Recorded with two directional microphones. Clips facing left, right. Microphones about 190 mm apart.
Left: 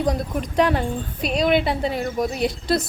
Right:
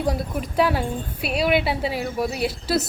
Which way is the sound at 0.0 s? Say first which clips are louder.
Left 2 dB; 5° right (ahead or behind).